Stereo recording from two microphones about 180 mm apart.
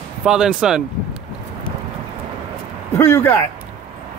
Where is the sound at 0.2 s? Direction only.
5° right (ahead or behind).